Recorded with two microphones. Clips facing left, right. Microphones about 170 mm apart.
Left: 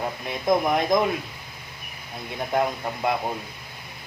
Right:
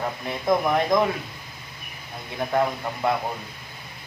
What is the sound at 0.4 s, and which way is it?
Speech, 15° left (ahead or behind).